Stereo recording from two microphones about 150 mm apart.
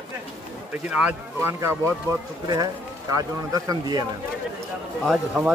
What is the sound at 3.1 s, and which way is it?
Speech, 25° right (ahead or behind).